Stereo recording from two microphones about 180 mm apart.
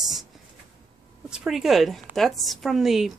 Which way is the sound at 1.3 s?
5° right (ahead or behind).